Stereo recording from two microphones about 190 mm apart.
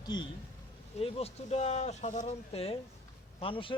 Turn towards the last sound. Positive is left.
turn(degrees=25)  # may be behind; listen again after turning